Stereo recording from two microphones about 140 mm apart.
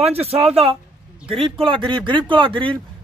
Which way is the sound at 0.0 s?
45° right (ahead or behind).